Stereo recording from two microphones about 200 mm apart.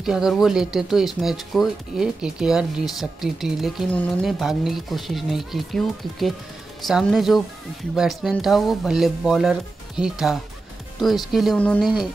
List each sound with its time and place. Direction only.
0.0 s speech: centre (ahead or behind)